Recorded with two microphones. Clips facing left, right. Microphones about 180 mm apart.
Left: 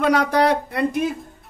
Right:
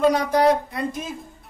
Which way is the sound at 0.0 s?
65° left (ahead or behind).